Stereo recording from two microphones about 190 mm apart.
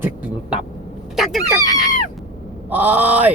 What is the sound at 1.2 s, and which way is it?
Fowl, centre (ahead or behind).